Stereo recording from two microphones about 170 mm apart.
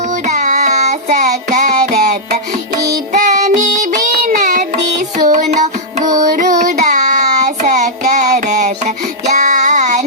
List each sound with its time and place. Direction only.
0.3 s music: 45° right (ahead or behind)
3.1 s music: 45° right (ahead or behind)
6.3 s child singing: 45° right (ahead or behind)